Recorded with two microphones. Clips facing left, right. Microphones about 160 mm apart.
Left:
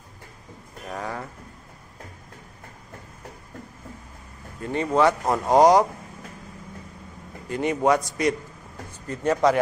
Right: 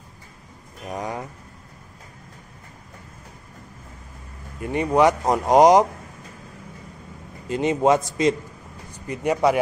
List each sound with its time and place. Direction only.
0.8 s speech: 20° right (ahead or behind)
4.6 s speech: 15° right (ahead or behind)
7.4 s a man's voice: 20° right (ahead or behind)
9.0 s speech: 15° right (ahead or behind)